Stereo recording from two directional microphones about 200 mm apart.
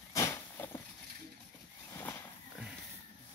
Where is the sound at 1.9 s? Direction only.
10° left (ahead or behind).